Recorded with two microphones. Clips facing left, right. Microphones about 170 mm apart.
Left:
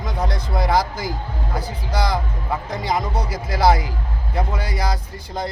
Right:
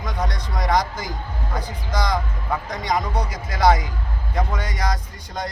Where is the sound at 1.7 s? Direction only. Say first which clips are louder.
Left 1 dB; 30° left (ahead or behind).